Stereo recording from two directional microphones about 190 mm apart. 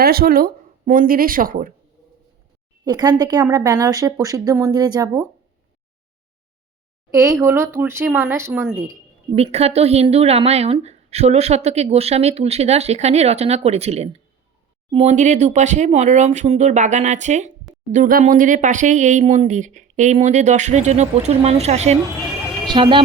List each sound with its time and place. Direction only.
0.0 s speech: 50° right (ahead or behind)
2.8 s a woman's voice: 20° right (ahead or behind)
7.1 s speech: 15° right (ahead or behind)
9.3 s a woman's voice: 35° right (ahead or behind)